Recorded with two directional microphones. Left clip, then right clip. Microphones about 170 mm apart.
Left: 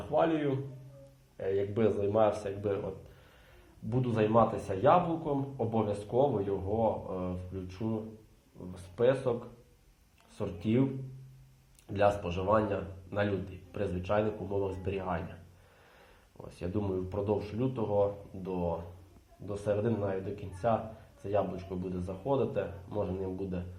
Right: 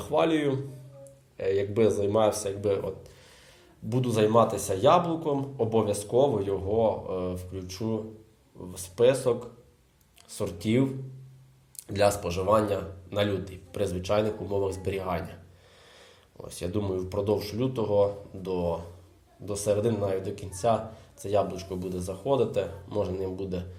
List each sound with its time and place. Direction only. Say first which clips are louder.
0.0 s a man's voice: right 4 dB; 30° right (ahead or behind)
10.3 s a man's voice: right 4 dB; 30° right (ahead or behind)
11.9 s a man's voice: right 4 dB; 25° right (ahead or behind)
16.4 s a man's voice: right 4 dB; 25° right (ahead or behind)